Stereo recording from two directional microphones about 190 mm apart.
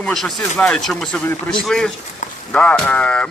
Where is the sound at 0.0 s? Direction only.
5° left (ahead or behind).